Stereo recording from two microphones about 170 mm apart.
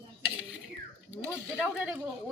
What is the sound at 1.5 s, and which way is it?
Speech, 10° right (ahead or behind).